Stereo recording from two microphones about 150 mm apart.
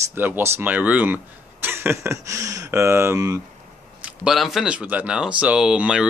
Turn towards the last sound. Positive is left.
turn(degrees=-5)  # may be behind; listen again after turning